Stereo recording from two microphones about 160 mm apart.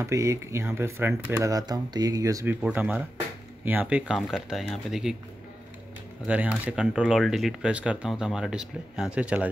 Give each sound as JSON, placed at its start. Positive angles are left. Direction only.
{"t": 0.0, "sound": "speech", "side_deg": -20}
{"t": 6.2, "sound": "speech", "side_deg": -10}